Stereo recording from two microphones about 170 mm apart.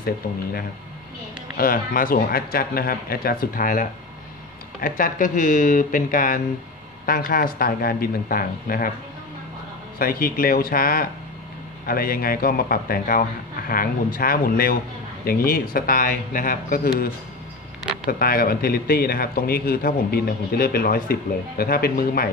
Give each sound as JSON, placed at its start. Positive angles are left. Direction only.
{"t": 1.6, "sound": "a man's voice", "side_deg": 55}
{"t": 4.8, "sound": "a man's voice", "side_deg": 55}
{"t": 9.9, "sound": "a man's voice", "side_deg": 60}